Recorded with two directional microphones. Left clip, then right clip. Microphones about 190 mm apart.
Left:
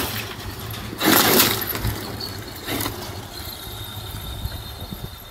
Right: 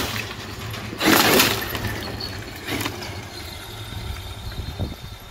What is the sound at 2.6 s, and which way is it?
Vehicle, 5° right (ahead or behind).